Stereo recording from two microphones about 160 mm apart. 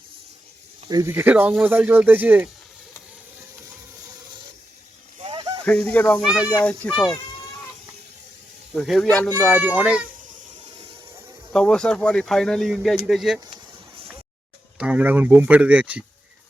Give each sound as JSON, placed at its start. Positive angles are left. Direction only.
{"t": 0.9, "sound": "speech", "side_deg": -25}
{"t": 1.1, "sound": "speech", "side_deg": -10}
{"t": 5.2, "sound": "a sound", "side_deg": -30}
{"t": 5.6, "sound": "speech", "side_deg": 10}
{"t": 6.2, "sound": "speech", "side_deg": -5}
{"t": 6.6, "sound": "speech", "side_deg": 5}
{"t": 8.7, "sound": "speech", "side_deg": 0}
{"t": 9.5, "sound": "speech", "side_deg": -10}
{"t": 11.5, "sound": "speech", "side_deg": 5}
{"t": 13.4, "sound": "a sound", "side_deg": -35}
{"t": 14.8, "sound": "speech", "side_deg": -10}